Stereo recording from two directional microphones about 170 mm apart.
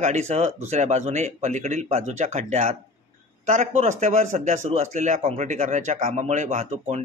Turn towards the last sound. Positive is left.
turn(degrees=-40)  # may be behind; listen again after turning